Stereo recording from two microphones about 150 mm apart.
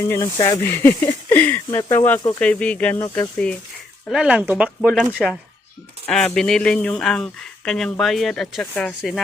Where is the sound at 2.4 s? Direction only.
10° left (ahead or behind).